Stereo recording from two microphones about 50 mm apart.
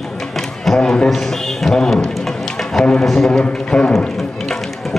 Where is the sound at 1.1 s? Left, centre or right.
Centre.